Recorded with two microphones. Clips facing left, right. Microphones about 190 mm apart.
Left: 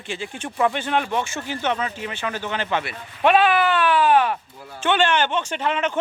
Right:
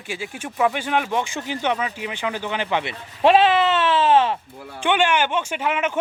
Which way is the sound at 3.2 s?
25° right (ahead or behind).